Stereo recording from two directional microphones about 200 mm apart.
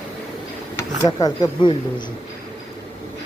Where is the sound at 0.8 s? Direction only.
20° left (ahead or behind).